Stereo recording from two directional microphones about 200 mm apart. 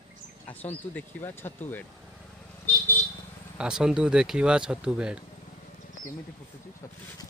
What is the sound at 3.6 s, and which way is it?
Speech, 5° right (ahead or behind).